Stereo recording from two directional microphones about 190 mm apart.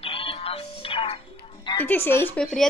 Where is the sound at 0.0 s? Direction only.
30° left (ahead or behind).